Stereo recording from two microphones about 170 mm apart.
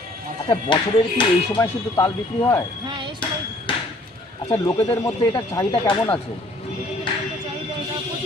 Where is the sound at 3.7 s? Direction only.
30° left (ahead or behind).